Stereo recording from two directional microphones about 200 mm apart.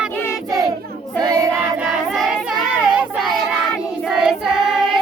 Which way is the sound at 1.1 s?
20° right (ahead or behind).